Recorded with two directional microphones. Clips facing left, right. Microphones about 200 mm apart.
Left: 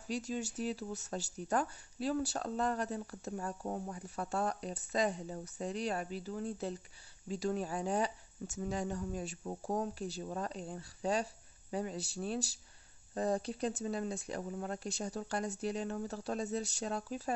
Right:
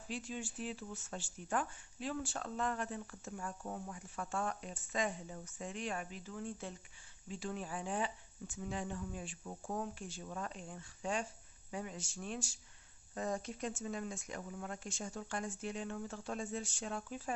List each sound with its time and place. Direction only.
0.1 s speech: 40° left (ahead or behind)